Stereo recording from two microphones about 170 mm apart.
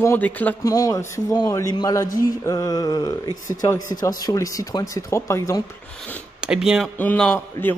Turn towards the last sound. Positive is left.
turn(degrees=5)  # may be behind; listen again after turning